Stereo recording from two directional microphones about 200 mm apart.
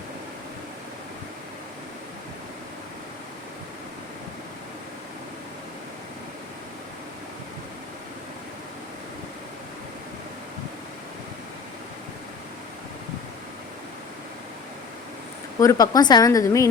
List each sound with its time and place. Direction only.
15.6 s a woman's voice: 20° left (ahead or behind)